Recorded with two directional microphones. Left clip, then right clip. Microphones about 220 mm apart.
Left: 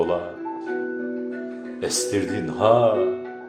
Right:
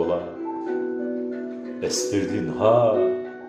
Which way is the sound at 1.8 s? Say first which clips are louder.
Even; 25° left (ahead or behind).